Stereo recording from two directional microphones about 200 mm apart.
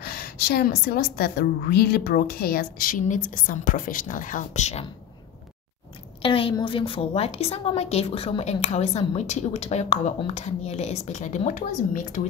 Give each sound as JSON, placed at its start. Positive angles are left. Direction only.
{"t": 0.0, "sound": "a woman's voice", "side_deg": 50}
{"t": 6.2, "sound": "a woman's voice", "side_deg": 25}